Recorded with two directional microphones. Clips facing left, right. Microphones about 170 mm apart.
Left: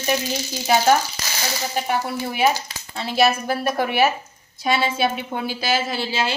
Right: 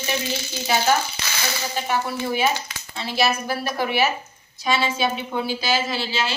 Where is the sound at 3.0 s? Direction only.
50° left (ahead or behind).